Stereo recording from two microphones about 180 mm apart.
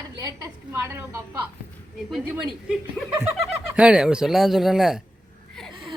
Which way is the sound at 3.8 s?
5° right (ahead or behind).